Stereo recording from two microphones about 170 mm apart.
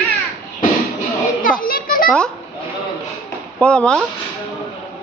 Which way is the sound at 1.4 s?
55° left (ahead or behind).